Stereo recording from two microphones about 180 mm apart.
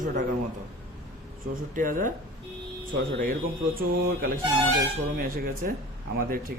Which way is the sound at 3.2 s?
55° right (ahead or behind).